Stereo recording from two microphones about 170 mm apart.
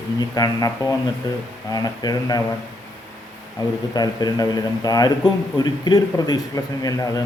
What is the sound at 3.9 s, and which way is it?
Speech, 25° left (ahead or behind).